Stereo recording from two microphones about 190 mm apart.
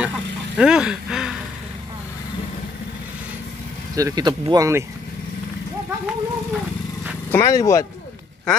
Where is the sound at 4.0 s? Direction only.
20° right (ahead or behind).